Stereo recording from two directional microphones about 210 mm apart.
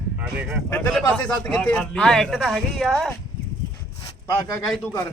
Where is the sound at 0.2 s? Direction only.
5° right (ahead or behind).